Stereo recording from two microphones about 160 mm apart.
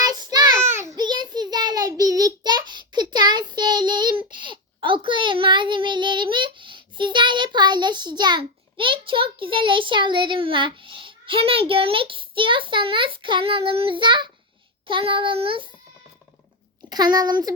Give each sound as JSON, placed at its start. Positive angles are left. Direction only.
{"t": 0.0, "sound": "child singing", "side_deg": -25}
{"t": 16.9, "sound": "a child's voice", "side_deg": -25}